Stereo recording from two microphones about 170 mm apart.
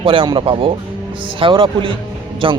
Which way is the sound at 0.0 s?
30° right (ahead or behind).